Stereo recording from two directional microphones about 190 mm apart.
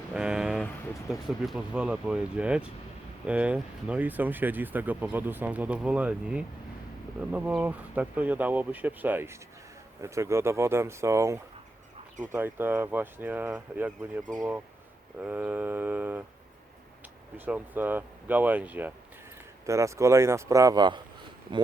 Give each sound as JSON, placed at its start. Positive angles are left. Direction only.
{"t": 0.1, "sound": "a sound", "side_deg": -5}
{"t": 1.0, "sound": "speech", "side_deg": -5}
{"t": 17.3, "sound": "speech", "side_deg": -10}